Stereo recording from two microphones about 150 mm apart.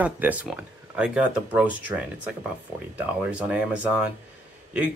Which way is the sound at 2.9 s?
10° right (ahead or behind).